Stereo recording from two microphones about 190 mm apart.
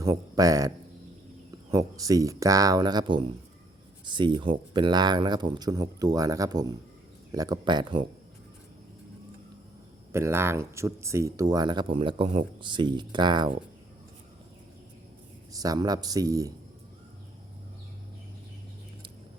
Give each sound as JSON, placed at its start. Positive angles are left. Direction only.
{"t": 0.0, "sound": "speech", "side_deg": -20}
{"t": 1.7, "sound": "speech", "side_deg": -20}
{"t": 10.1, "sound": "speech", "side_deg": -15}
{"t": 15.5, "sound": "speech", "side_deg": -20}